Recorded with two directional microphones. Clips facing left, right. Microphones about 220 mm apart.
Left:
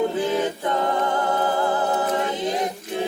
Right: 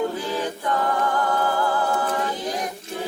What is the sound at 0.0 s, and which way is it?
Music, 20° left (ahead or behind).